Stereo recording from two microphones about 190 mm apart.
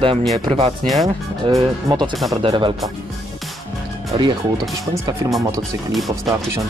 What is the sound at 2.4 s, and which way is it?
Speech, 25° right (ahead or behind).